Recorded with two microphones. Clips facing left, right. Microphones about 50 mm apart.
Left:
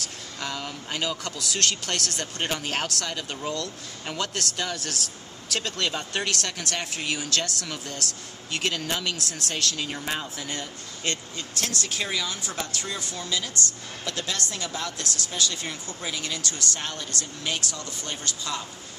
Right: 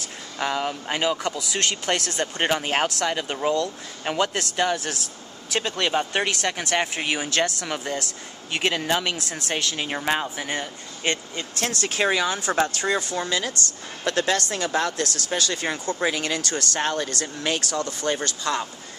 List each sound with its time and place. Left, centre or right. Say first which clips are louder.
0.4 s speech: right 8 dB; right
9.8 s speech: right 6 dB; right
10.3 s speech: right 5 dB; right
12.0 s speech: right 10 dB; right
12.4 s speech: right 10 dB; right
12.8 s speech: right 9 dB; right